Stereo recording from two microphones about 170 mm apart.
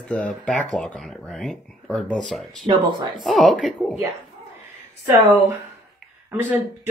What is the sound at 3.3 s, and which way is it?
Speech, 5° left (ahead or behind).